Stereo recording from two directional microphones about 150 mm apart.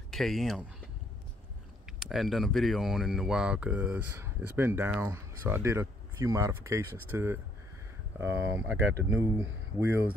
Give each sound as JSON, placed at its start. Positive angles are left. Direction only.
{"t": 0.1, "sound": "speech", "side_deg": 0}
{"t": 2.0, "sound": "speech", "side_deg": 0}